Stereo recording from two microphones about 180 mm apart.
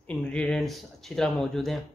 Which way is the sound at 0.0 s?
5° left (ahead or behind).